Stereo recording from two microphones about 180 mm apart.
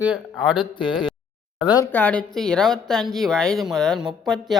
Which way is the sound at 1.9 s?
10° left (ahead or behind).